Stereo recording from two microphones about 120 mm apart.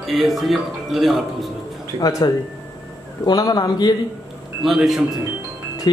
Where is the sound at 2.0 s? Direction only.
30° left (ahead or behind).